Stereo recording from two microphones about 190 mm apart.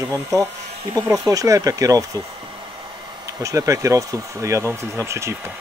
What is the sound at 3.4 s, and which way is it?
Speech, 15° right (ahead or behind).